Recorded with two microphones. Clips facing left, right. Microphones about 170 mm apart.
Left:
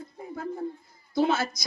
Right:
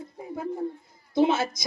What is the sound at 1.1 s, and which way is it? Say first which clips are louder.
Speech: right 2 dB; 25° right (ahead or behind).